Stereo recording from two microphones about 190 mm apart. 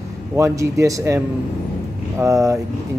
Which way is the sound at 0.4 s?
15° right (ahead or behind).